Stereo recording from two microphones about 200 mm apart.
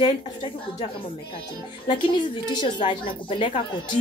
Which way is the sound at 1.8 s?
20° left (ahead or behind).